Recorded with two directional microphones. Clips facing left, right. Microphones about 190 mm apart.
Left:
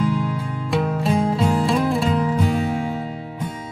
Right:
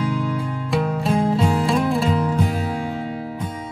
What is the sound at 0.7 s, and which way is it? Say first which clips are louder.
Music: left 1 dB; centre (ahead or behind).